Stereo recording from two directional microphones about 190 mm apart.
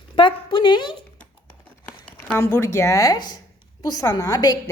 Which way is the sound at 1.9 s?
5° left (ahead or behind).